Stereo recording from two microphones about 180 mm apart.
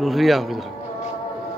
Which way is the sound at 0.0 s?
Centre (ahead or behind).